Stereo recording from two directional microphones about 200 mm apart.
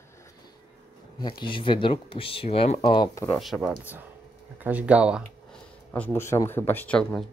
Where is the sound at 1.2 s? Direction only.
25° left (ahead or behind).